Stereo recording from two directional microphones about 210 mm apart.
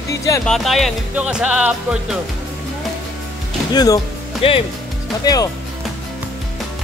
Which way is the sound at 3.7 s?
20° left (ahead or behind).